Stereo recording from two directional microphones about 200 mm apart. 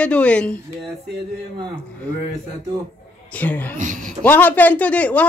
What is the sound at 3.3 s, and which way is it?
Speech, 10° left (ahead or behind).